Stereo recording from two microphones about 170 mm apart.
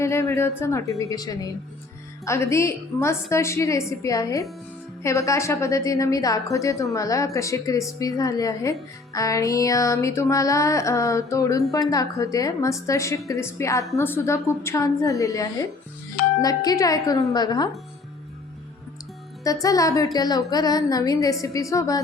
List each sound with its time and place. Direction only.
0.0 s a woman's voice: 15° left (ahead or behind)
19.6 s a woman's voice: 20° left (ahead or behind)